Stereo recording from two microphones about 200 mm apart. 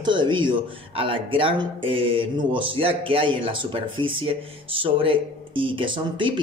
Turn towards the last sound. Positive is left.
turn(degrees=-25)  # may be behind; listen again after turning